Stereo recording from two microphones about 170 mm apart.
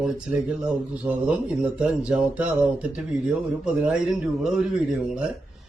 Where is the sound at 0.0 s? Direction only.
5° right (ahead or behind).